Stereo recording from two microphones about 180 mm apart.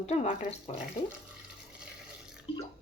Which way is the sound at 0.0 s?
35° left (ahead or behind).